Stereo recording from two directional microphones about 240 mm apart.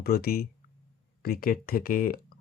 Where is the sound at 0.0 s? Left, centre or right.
Left.